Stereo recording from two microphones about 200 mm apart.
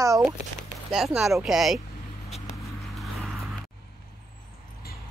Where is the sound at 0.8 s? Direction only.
5° right (ahead or behind).